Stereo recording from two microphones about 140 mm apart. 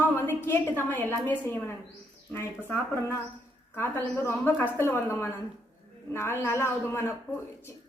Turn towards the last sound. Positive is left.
turn(degrees=20)  # may be behind; listen again after turning